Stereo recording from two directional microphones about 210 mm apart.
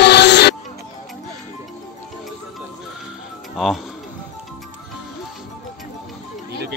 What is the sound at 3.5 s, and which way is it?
Music, centre (ahead or behind).